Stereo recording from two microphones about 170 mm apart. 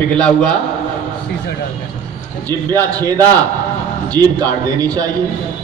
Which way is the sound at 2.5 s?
20° right (ahead or behind).